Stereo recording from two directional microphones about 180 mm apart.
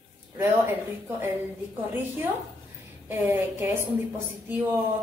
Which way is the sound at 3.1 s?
10° right (ahead or behind).